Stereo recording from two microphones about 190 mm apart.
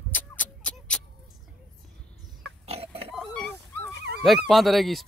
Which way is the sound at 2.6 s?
30° right (ahead or behind).